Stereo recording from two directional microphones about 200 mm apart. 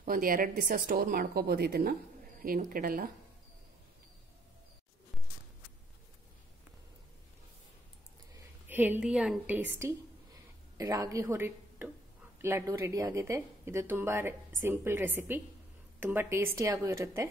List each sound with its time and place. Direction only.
0.0 s a woman's voice: 45° right (ahead or behind)
8.6 s a woman's voice: 10° right (ahead or behind)